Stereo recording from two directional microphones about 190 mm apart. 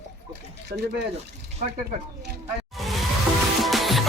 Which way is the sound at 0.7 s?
60° right (ahead or behind).